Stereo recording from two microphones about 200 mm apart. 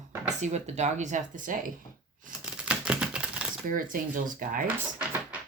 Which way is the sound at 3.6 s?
40° right (ahead or behind).